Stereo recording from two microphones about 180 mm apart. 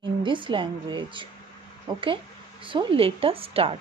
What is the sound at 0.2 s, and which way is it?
A woman's voice, 25° right (ahead or behind).